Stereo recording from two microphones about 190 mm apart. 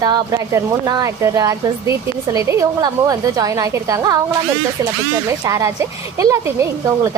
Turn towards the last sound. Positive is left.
turn(degrees=-15)  # may be behind; listen again after turning